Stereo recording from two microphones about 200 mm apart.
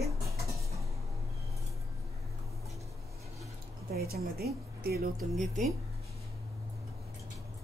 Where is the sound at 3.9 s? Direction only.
50° right (ahead or behind).